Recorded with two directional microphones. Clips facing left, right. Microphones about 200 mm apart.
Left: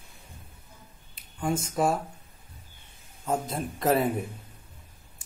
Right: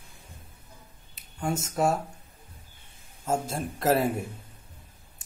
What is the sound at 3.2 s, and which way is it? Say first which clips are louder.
Speech: even; centre (ahead or behind).